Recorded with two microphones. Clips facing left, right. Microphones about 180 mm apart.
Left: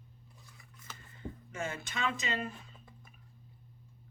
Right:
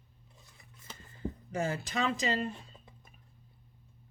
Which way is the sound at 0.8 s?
30° right (ahead or behind).